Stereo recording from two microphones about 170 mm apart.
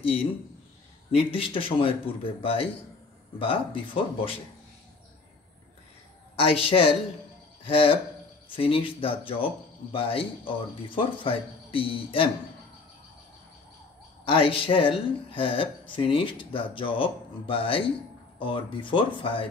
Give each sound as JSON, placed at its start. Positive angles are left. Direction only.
{"t": 1.1, "sound": "speech", "side_deg": 30}
{"t": 6.3, "sound": "speech", "side_deg": 35}
{"t": 14.2, "sound": "speech", "side_deg": 30}